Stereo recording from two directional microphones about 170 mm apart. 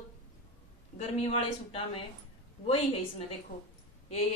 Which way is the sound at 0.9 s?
30° left (ahead or behind).